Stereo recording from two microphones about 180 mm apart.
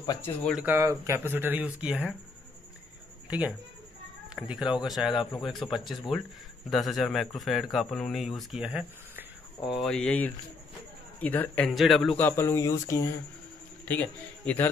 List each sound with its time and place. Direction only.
0.0 s speech: 20° left (ahead or behind)
0.5 s speech: 10° right (ahead or behind)
3.3 s a man's voice: 5° right (ahead or behind)
12.2 s a man's voice: 10° left (ahead or behind)